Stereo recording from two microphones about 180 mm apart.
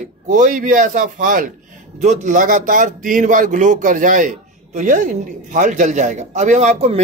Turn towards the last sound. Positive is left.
turn(degrees=-40)  # may be behind; listen again after turning